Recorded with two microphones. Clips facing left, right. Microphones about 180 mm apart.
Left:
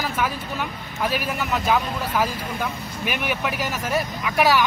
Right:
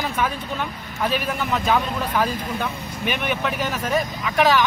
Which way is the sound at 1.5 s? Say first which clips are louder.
Right 1 dB; 5° left (ahead or behind).